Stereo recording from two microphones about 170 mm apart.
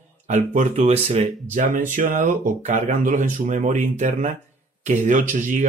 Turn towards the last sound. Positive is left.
turn(degrees=-50)  # may be behind; listen again after turning